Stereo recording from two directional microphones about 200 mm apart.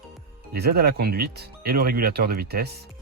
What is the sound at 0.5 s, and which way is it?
Speech, 50° right (ahead or behind).